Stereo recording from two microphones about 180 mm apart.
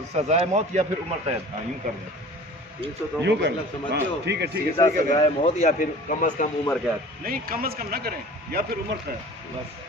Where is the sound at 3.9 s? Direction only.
70° right (ahead or behind).